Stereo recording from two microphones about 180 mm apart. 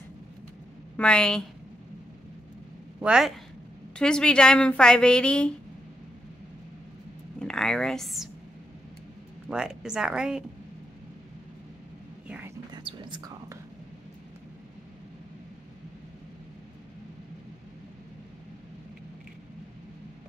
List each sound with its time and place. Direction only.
0.9 s a woman's voice: 5° left (ahead or behind)
3.0 s a woman's voice: 5° right (ahead or behind)
7.3 s speech: 5° left (ahead or behind)
9.5 s a woman's voice: 5° right (ahead or behind)
12.3 s mouse: 10° right (ahead or behind)
12.7 s whispering: 25° right (ahead or behind)